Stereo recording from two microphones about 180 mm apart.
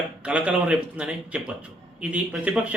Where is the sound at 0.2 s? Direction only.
5° right (ahead or behind).